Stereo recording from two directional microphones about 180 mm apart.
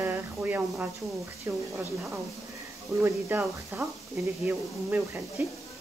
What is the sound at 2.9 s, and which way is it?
Speech, 15° right (ahead or behind).